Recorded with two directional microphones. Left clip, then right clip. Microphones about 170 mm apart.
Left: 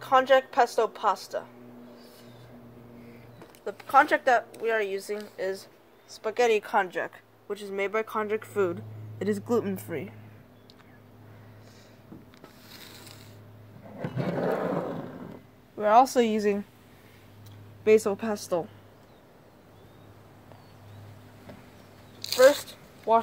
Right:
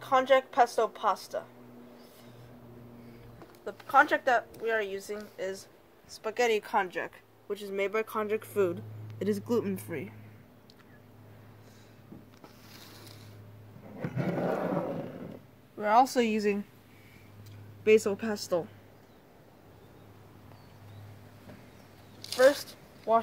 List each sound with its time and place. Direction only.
0.0 s a woman's voice: 40° left (ahead or behind)
3.6 s a woman's voice: 45° left (ahead or behind)
14.1 s a sound: centre (ahead or behind)
15.8 s speech: 30° left (ahead or behind)
17.8 s speech: 25° left (ahead or behind)
22.3 s a sound: 20° left (ahead or behind)
22.6 s zipper: 35° left (ahead or behind)